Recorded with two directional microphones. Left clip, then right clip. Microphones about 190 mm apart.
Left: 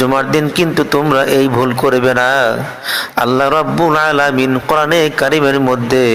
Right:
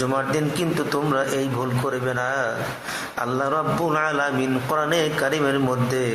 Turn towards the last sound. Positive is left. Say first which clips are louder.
# left 11 dB
turn(degrees=35)  # may be behind; listen again after turning